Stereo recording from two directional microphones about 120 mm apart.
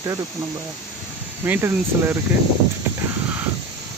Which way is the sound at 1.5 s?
20° right (ahead or behind).